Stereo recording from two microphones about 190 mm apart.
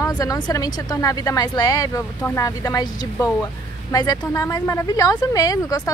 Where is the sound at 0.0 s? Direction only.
20° left (ahead or behind).